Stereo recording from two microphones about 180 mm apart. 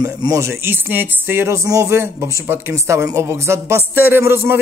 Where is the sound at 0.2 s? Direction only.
15° right (ahead or behind).